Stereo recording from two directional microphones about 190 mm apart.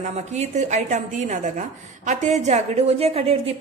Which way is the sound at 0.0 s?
35° right (ahead or behind).